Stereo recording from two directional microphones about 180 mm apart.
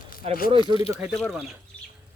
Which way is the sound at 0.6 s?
30° left (ahead or behind).